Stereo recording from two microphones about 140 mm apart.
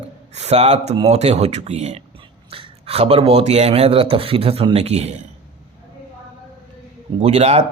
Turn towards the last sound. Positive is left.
turn(degrees=-50)  # may be behind; listen again after turning